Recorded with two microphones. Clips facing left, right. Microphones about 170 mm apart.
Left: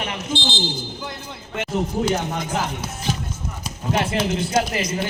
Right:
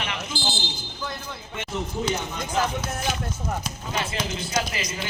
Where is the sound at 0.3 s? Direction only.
Centre (ahead or behind).